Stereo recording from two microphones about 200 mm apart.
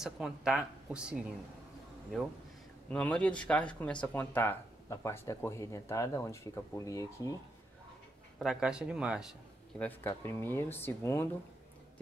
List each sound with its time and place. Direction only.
0.0 s speech: 5° right (ahead or behind)
2.9 s speech: 5° left (ahead or behind)
8.4 s speech: 5° right (ahead or behind)
9.8 s speech: 10° left (ahead or behind)